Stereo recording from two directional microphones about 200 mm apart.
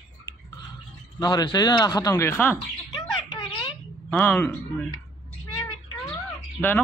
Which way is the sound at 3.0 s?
25° left (ahead or behind).